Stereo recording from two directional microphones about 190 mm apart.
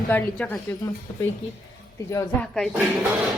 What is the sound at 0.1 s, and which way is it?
A woman's voice, 10° left (ahead or behind).